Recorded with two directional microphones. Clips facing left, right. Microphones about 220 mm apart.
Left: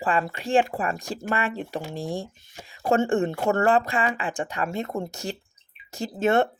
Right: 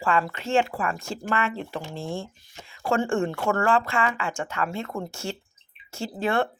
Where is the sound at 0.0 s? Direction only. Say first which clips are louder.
Even; 20° left (ahead or behind).